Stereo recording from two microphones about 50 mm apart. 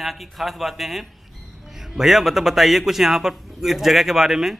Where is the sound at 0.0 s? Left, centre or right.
Centre.